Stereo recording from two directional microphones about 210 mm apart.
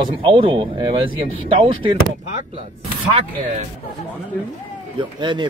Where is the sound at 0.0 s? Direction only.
25° right (ahead or behind).